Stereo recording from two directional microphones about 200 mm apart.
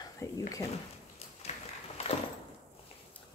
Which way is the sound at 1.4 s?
30° left (ahead or behind).